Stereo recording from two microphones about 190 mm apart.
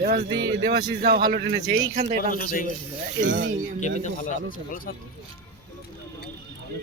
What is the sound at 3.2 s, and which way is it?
Speech, 75° right (ahead or behind).